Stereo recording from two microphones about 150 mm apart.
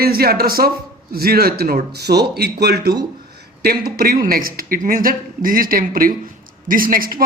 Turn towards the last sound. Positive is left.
turn(degrees=-70)  # may be behind; listen again after turning